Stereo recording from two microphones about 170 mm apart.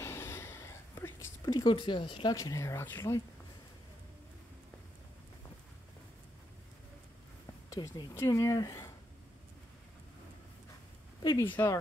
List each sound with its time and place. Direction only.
0.0 s a sound: 15° left (ahead or behind)
1.4 s speech: 25° left (ahead or behind)
7.7 s speech: 20° left (ahead or behind)
11.2 s speech: 15° left (ahead or behind)